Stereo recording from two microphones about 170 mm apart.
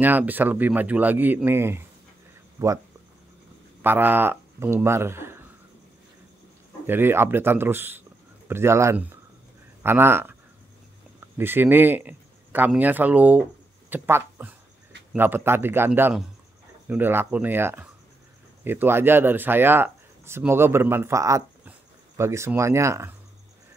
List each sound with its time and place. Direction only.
0.0 s speech: 10° right (ahead or behind)
3.8 s speech: 10° right (ahead or behind)
6.9 s speech: 15° right (ahead or behind)